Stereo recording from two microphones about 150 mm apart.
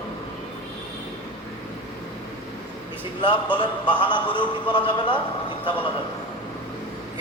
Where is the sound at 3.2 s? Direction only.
30° left (ahead or behind).